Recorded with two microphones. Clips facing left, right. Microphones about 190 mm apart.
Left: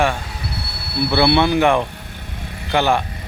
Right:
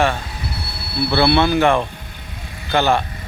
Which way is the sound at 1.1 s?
15° left (ahead or behind).